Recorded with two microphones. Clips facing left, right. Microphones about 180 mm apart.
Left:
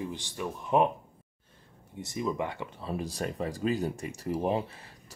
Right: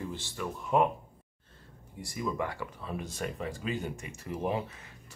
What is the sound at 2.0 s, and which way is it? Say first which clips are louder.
Speech: left 2 dB; 20° left (ahead or behind).